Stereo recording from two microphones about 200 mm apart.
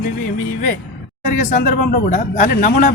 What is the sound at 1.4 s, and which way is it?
Speech, 45° left (ahead or behind).